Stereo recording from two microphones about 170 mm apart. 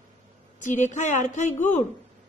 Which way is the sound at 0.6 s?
45° left (ahead or behind).